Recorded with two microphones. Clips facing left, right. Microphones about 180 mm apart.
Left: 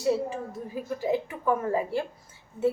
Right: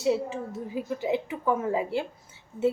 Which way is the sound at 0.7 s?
20° right (ahead or behind).